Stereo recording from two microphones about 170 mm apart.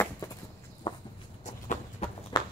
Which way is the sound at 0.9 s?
30° left (ahead or behind).